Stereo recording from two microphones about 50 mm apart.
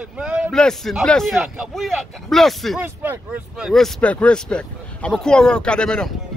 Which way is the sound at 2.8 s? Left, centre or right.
Right.